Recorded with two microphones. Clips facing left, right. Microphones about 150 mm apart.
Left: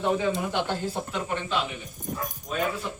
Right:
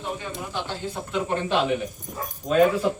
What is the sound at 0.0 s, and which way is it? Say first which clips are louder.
Speech: left 7 dB; 75° left (ahead or behind).